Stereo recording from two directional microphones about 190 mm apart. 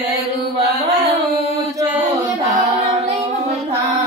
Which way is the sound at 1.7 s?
15° right (ahead or behind).